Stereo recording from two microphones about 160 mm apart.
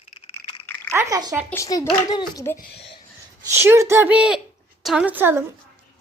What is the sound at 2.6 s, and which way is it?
Speech, 90° left.